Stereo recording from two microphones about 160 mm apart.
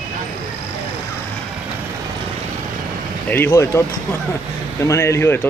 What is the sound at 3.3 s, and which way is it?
Speech, 15° left (ahead or behind).